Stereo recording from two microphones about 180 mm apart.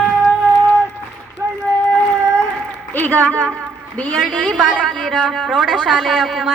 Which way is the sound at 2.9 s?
10° left (ahead or behind).